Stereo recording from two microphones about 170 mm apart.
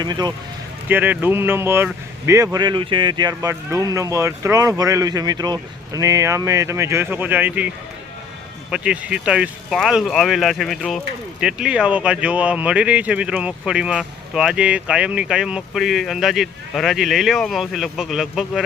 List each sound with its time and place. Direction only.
0.0 s speech: 25° right (ahead or behind)
0.9 s speech: 10° right (ahead or behind)
8.7 s speech: 5° right (ahead or behind)